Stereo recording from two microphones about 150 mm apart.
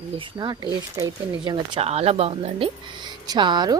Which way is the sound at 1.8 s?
45° right (ahead or behind).